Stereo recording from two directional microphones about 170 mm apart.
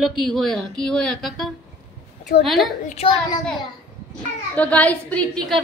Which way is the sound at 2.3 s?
65° left (ahead or behind).